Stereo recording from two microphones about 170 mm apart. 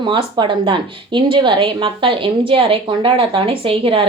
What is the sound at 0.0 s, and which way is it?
A woman's voice, 30° right (ahead or behind).